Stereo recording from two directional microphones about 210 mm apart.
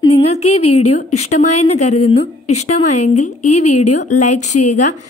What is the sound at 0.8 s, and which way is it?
A woman's voice, 30° left (ahead or behind).